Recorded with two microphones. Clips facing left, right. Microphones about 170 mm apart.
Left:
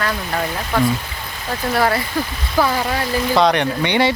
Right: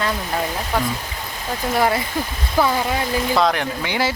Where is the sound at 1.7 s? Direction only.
20° right (ahead or behind).